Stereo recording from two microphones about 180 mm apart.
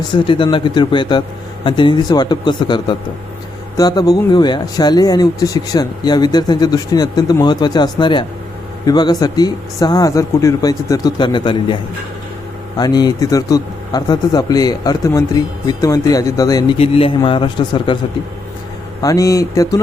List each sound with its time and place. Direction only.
0.1 s speech: 25° left (ahead or behind)
16.7 s a man's voice: 35° left (ahead or behind)
19.0 s speech: 20° left (ahead or behind)